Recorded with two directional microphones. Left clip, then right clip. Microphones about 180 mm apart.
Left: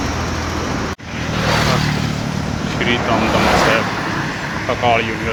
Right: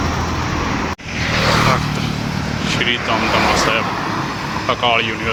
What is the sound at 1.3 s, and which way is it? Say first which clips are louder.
Vehicle: right 2 dB; 30° right (ahead or behind).